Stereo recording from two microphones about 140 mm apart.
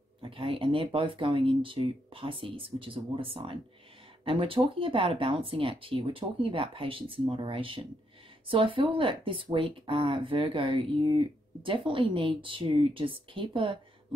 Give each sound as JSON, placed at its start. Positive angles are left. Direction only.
{"t": 0.2, "sound": "speech", "side_deg": -40}